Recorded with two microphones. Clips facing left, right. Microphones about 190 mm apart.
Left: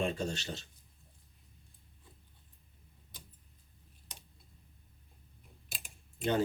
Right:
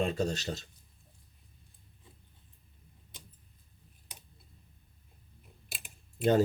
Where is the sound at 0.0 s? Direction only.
40° right (ahead or behind).